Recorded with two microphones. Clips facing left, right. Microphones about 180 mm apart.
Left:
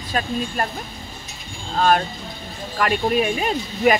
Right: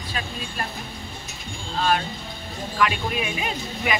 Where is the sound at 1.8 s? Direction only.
45° left (ahead or behind).